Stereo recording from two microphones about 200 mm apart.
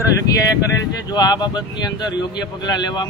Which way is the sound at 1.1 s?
20° left (ahead or behind).